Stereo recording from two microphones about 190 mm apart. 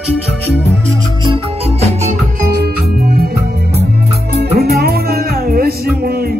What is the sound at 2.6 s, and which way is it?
Music, 55° right (ahead or behind).